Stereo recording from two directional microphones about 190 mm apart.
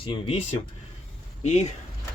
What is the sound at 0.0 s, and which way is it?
Speech, 25° left (ahead or behind).